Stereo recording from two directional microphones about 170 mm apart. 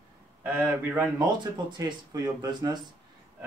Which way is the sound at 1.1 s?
20° right (ahead or behind).